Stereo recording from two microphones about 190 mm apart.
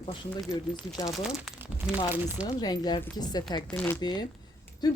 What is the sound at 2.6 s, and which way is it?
Speech, 20° left (ahead or behind).